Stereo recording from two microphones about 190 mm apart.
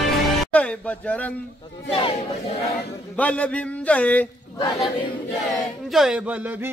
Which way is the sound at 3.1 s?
5° left (ahead or behind).